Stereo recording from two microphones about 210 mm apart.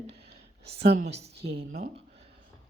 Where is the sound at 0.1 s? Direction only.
30° right (ahead or behind).